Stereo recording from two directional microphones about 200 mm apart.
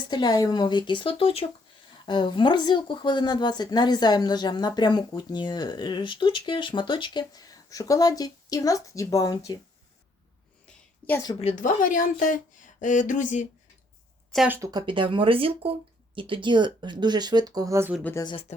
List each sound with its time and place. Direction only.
0.1 s speech: 20° left (ahead or behind)
10.7 s a sound: 10° left (ahead or behind)
11.3 s speech: 35° left (ahead or behind)
14.3 s speech: 10° right (ahead or behind)
14.7 s speech: 20° right (ahead or behind)
18.0 s speech: 15° left (ahead or behind)